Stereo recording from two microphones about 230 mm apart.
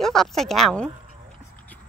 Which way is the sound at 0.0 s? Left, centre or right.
Centre.